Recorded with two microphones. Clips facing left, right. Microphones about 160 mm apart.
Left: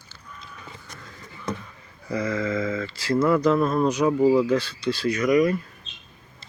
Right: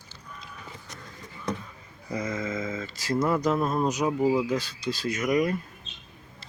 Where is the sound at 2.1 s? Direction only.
20° right (ahead or behind).